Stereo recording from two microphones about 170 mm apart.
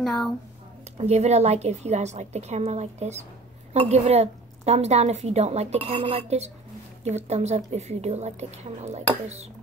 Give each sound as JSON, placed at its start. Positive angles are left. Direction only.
{"t": 0.0, "sound": "speech", "side_deg": 0}
{"t": 0.9, "sound": "a woman's voice", "side_deg": -40}